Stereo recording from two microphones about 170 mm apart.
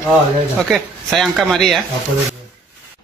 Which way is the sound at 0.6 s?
Centre (ahead or behind).